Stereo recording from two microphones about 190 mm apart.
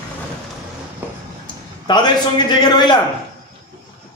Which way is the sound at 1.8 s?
25° left (ahead or behind).